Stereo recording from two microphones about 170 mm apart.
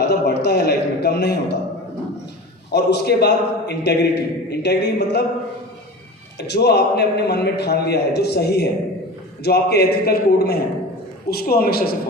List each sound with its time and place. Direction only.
0.0 s a sound: 75° left (ahead or behind)
2.6 s a man's voice: 80° left
6.5 s a man's voice: 75° left (ahead or behind)